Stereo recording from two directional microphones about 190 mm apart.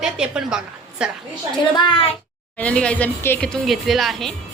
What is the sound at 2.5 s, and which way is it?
A woman's voice, 5° left (ahead or behind).